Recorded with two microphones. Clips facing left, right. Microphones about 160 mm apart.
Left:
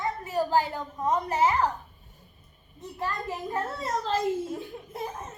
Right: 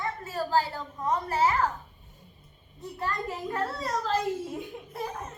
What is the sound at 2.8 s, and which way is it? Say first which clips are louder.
A woman's voice: even; 20° left (ahead or behind).